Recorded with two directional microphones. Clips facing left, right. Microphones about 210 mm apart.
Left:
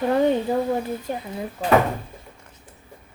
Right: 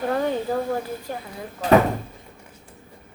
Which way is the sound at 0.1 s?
20° left (ahead or behind).